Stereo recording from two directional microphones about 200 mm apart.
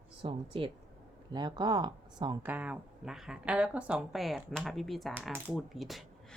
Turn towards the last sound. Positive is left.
turn(degrees=0)  # may be behind; listen again after turning